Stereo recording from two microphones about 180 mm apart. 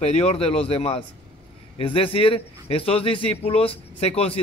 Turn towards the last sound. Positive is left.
turn(degrees=35)  # may be behind; listen again after turning